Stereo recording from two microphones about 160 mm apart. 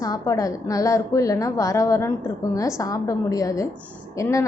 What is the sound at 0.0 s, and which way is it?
A woman's voice, 20° left (ahead or behind).